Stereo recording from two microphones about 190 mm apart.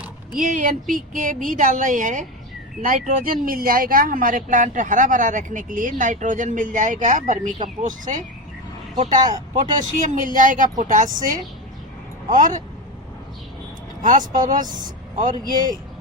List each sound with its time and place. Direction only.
0.3 s speech: 45° right (ahead or behind)
9.6 s speech: 40° right (ahead or behind)
12.3 s speech: 40° right (ahead or behind)
14.0 s speech: 45° right (ahead or behind)